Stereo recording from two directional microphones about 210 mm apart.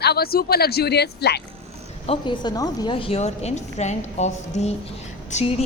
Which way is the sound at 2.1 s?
20° left (ahead or behind).